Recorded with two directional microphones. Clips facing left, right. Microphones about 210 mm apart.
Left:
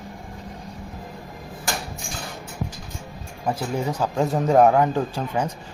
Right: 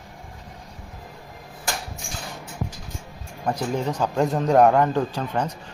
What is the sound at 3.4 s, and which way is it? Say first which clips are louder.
A man's voice: even; 5° left (ahead or behind).